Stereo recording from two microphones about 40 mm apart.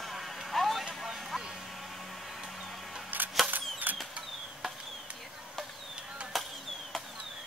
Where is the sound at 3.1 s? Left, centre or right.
Right.